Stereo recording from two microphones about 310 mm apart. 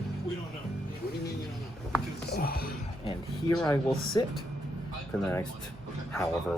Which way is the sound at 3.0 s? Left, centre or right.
Centre.